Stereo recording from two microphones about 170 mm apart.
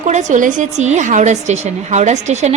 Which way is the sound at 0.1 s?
45° right (ahead or behind).